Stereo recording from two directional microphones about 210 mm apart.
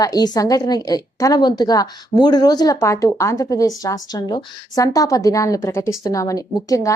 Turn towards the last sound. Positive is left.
turn(degrees=15)  # may be behind; listen again after turning